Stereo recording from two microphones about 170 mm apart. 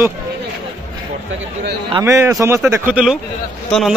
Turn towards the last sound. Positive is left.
turn(degrees=0)  # may be behind; listen again after turning